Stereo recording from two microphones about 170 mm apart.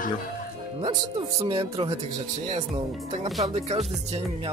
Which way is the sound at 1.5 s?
30° right (ahead or behind).